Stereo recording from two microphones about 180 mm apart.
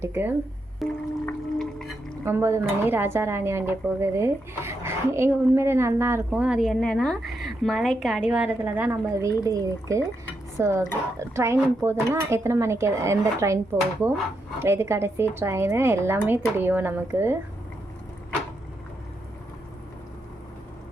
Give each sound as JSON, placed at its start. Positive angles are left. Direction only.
{"t": 0.0, "sound": "speech", "side_deg": -10}
{"t": 0.8, "sound": "music", "side_deg": 0}
{"t": 1.2, "sound": "drip", "side_deg": 5}
{"t": 2.2, "sound": "speech", "side_deg": -15}
{"t": 14.6, "sound": "speech", "side_deg": -15}